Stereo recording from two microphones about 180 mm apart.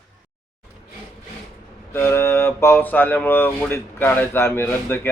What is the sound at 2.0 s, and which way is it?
Speech, 15° left (ahead or behind).